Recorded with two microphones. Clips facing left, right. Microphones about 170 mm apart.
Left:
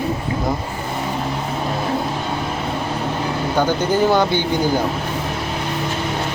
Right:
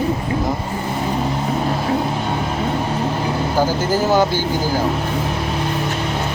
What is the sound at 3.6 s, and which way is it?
Speech, 5° right (ahead or behind).